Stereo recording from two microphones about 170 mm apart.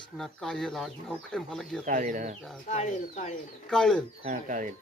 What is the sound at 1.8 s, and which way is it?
Speech, 50° right (ahead or behind).